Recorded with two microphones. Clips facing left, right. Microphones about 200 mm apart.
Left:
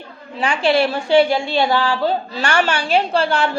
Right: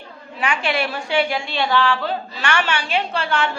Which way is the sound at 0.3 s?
30° left (ahead or behind).